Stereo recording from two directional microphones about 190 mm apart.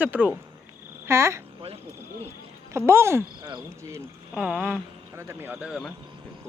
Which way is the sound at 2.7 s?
15° right (ahead or behind).